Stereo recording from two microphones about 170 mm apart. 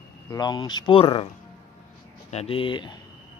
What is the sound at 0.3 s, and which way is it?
Speech, 25° left (ahead or behind).